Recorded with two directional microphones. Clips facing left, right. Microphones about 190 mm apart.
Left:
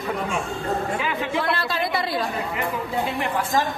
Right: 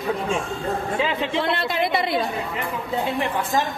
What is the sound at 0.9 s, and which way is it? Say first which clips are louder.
Speech: right 2 dB; 25° right (ahead or behind).